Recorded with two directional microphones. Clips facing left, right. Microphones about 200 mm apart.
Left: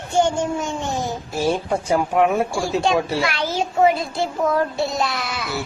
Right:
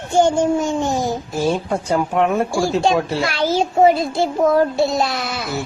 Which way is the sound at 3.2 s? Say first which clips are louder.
Right 4 dB; 35° right (ahead or behind).